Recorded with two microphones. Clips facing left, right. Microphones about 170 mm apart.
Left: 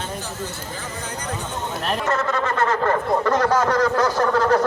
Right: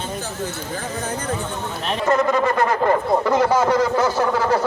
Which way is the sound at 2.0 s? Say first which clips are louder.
Right 7 dB; 15° right (ahead or behind).